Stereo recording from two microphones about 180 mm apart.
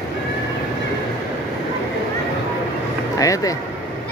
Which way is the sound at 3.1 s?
20° left (ahead or behind).